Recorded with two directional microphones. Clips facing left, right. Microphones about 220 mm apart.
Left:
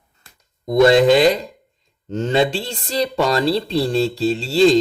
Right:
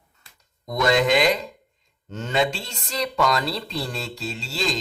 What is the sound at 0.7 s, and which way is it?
Speech, 30° left (ahead or behind).